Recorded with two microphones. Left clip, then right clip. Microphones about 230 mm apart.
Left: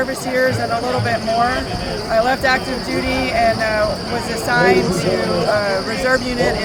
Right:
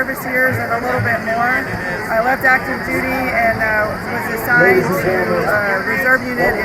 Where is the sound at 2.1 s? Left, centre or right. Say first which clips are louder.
Right 1 dB; centre.